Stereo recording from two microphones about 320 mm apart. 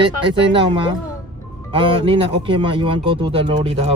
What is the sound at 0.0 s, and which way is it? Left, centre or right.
Speech, centre.